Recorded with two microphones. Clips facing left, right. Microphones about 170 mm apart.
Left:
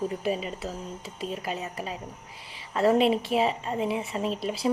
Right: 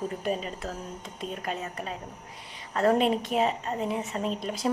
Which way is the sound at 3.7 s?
10° left (ahead or behind).